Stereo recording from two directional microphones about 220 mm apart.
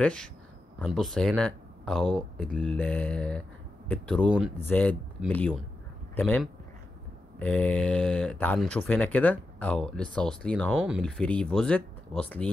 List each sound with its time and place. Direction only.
0.0 s speech: 5° left (ahead or behind)